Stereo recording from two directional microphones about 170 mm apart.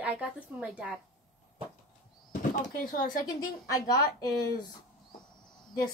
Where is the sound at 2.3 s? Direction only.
50° left (ahead or behind).